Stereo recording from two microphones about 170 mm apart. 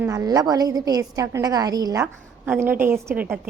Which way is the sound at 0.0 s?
20° right (ahead or behind).